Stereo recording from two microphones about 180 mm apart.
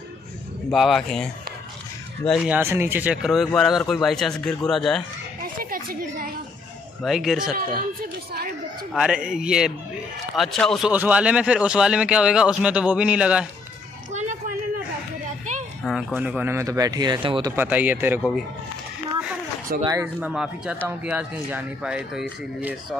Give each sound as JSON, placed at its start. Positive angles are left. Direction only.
{"t": 0.7, "sound": "speech", "side_deg": 0}
{"t": 2.5, "sound": "speech", "side_deg": -15}
{"t": 5.6, "sound": "a sound", "side_deg": -55}
{"t": 7.0, "sound": "speech", "side_deg": 0}
{"t": 8.3, "sound": "speech", "side_deg": -60}
{"t": 8.9, "sound": "speech", "side_deg": -5}
{"t": 14.1, "sound": "a sound", "side_deg": -40}
{"t": 15.8, "sound": "speech", "side_deg": 0}
{"t": 17.6, "sound": "speech", "side_deg": -10}
{"t": 19.8, "sound": "speech", "side_deg": -20}
{"t": 20.2, "sound": "speech", "side_deg": -5}